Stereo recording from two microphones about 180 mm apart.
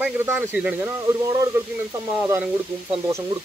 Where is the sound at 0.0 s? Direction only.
10° right (ahead or behind).